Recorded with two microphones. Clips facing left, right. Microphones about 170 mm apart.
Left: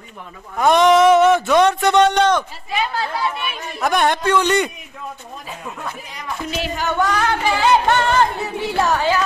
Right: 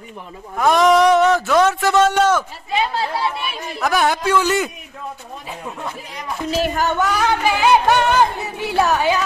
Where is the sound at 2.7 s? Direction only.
25° right (ahead or behind).